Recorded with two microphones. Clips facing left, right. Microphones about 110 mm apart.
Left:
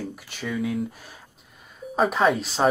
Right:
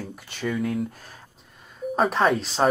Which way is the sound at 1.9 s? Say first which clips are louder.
Even; centre (ahead or behind).